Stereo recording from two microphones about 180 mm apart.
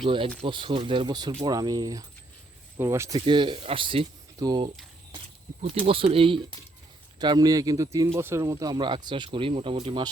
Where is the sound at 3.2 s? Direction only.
25° right (ahead or behind).